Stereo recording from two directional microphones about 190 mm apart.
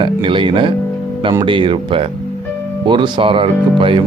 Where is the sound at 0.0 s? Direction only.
25° right (ahead or behind).